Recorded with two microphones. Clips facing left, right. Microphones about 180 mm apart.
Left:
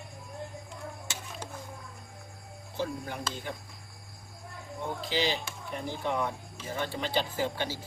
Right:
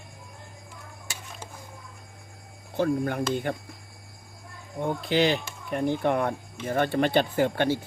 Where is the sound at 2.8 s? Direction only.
60° right (ahead or behind).